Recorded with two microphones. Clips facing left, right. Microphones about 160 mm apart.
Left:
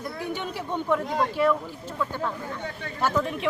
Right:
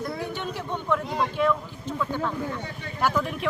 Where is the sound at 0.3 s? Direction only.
10° left (ahead or behind).